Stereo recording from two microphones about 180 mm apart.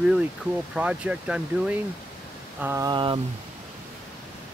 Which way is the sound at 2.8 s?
25° right (ahead or behind).